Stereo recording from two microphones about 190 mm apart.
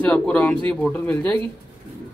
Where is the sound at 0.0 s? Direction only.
5° left (ahead or behind).